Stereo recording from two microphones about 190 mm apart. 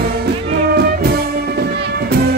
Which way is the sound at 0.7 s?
55° right (ahead or behind).